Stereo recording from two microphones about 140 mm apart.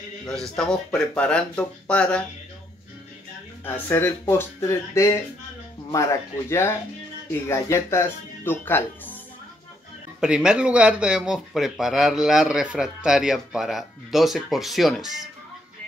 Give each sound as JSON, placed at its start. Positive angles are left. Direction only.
{"t": 0.3, "sound": "speech", "side_deg": 5}
{"t": 3.6, "sound": "speech", "side_deg": 15}
{"t": 6.5, "sound": "speech", "side_deg": 20}
{"t": 10.2, "sound": "speech", "side_deg": -5}